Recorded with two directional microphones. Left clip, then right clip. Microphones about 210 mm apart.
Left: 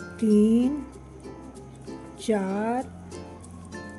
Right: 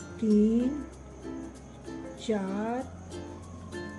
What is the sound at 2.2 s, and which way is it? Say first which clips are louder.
Speech: left 6 dB; 45° left (ahead or behind).